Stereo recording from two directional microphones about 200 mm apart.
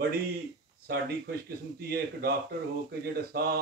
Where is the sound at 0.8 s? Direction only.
50° right (ahead or behind).